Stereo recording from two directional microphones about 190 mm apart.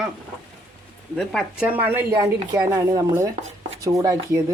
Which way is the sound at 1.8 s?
10° right (ahead or behind).